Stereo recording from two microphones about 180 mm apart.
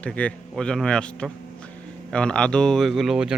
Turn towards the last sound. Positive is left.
turn(degrees=-5)  # may be behind; listen again after turning